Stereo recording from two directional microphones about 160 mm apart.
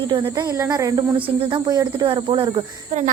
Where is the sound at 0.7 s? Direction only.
30° right (ahead or behind).